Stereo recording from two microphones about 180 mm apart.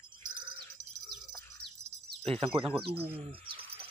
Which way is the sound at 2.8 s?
65° right (ahead or behind).